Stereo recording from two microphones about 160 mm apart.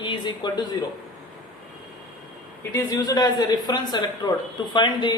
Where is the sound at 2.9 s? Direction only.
25° left (ahead or behind).